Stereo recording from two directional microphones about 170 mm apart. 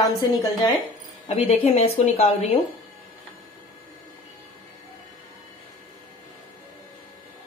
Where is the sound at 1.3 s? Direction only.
40° left (ahead or behind).